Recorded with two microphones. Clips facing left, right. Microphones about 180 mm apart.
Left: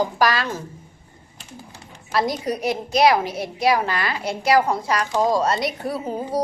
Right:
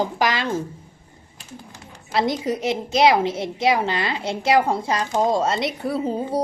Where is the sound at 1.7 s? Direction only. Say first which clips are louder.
Even; 25° right (ahead or behind).